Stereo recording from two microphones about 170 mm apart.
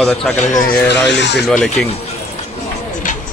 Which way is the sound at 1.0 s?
90° left.